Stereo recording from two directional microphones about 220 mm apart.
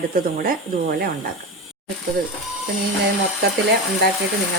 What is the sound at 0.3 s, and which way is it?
Speech, 40° right (ahead or behind).